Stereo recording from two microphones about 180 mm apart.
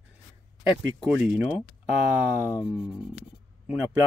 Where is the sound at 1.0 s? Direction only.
Centre (ahead or behind).